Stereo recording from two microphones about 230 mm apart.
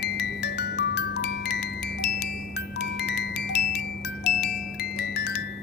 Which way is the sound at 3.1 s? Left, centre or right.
Left.